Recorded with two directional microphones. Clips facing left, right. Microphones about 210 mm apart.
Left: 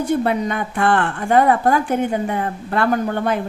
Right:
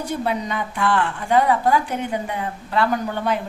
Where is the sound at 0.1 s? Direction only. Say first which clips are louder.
Left 4 dB; 55° left (ahead or behind).